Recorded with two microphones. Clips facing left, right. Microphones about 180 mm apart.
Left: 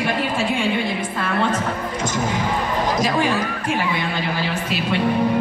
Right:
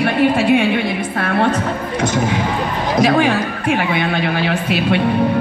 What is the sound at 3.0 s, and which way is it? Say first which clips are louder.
Speech: right 10 dB; 65° right (ahead or behind).